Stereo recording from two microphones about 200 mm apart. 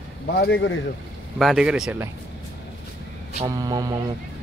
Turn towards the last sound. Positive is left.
turn(degrees=-20)  # may be behind; listen again after turning